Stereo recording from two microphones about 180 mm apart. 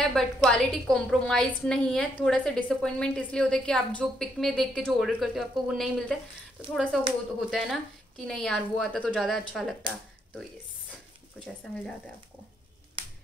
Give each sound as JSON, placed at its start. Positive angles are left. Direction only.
{"t": 0.0, "sound": "a woman's voice", "side_deg": 5}
{"t": 13.0, "sound": "finger snapping", "side_deg": -30}